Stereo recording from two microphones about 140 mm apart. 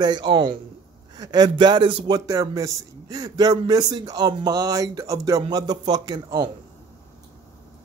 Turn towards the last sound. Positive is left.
turn(degrees=-30)  # may be behind; listen again after turning